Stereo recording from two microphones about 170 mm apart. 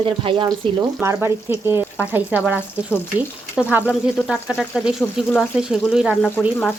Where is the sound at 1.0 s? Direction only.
15° right (ahead or behind).